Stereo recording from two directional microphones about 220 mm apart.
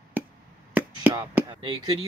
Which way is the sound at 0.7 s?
5° right (ahead or behind).